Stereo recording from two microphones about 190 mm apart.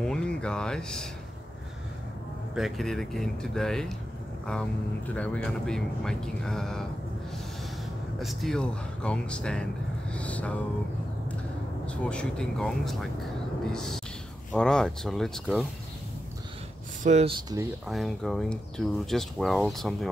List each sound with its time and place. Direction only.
0.0 s speech: 5° left (ahead or behind)
2.5 s speech: centre (ahead or behind)
8.2 s speech: centre (ahead or behind)
11.8 s speech: 5° left (ahead or behind)
17.0 s speech: 35° right (ahead or behind)
17.8 s speech: centre (ahead or behind)